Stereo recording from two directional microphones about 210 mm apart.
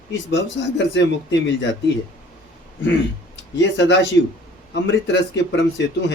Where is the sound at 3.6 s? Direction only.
60° left (ahead or behind).